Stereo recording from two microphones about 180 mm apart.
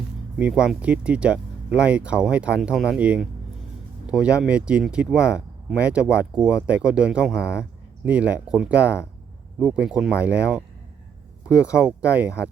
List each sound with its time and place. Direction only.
0.3 s speech: 5° right (ahead or behind)